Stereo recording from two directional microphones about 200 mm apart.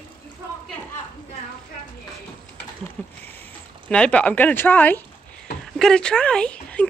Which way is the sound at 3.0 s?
5° left (ahead or behind).